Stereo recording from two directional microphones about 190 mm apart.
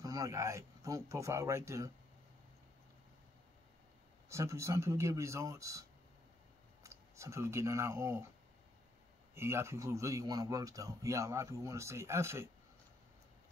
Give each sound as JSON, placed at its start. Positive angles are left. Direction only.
{"t": 0.0, "sound": "speech", "side_deg": -15}
{"t": 4.3, "sound": "speech", "side_deg": -15}
{"t": 9.3, "sound": "speech", "side_deg": -15}